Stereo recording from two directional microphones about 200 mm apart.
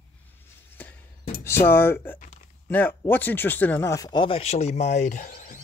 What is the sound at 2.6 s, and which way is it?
Speech, 10° left (ahead or behind).